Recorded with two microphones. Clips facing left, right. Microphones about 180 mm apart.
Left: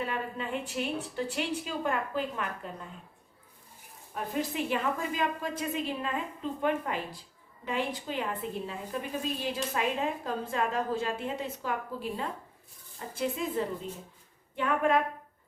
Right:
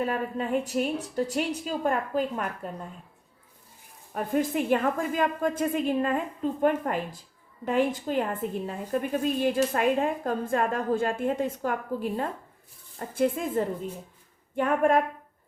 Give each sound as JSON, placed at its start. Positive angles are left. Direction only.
{"t": 0.0, "sound": "a woman's voice", "side_deg": -40}
{"t": 4.1, "sound": "a woman's voice", "side_deg": -50}